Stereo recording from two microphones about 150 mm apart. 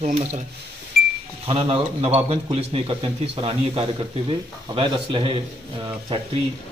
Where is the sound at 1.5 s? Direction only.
40° right (ahead or behind).